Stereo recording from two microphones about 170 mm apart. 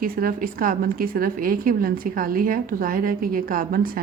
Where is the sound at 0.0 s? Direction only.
60° right (ahead or behind).